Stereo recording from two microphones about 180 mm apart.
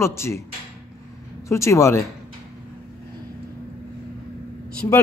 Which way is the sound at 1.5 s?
15° left (ahead or behind).